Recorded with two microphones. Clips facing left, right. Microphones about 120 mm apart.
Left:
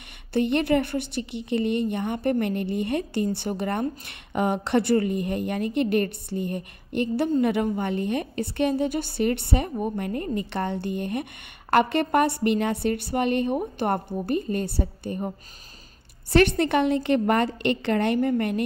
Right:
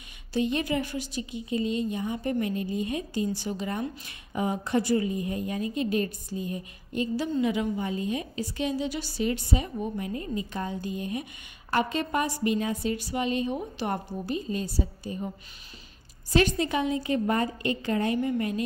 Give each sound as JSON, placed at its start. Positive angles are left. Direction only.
{"t": 0.3, "sound": "a woman's voice", "side_deg": 60}